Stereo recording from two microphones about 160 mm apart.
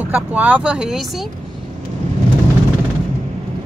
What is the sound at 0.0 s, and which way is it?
Speech, 10° right (ahead or behind).